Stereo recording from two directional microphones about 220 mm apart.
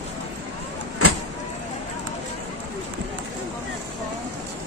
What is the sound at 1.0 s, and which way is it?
Vehicle, 90° right.